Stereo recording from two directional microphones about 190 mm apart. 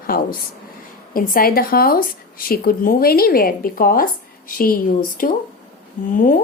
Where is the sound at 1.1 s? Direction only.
50° left (ahead or behind).